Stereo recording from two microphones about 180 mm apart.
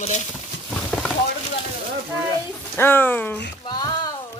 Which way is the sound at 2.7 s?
10° left (ahead or behind).